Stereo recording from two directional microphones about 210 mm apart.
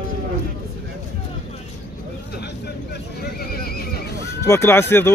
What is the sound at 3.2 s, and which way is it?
Neigh, 45° left (ahead or behind).